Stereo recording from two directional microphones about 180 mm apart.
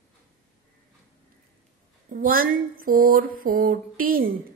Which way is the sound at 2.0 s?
50° right (ahead or behind).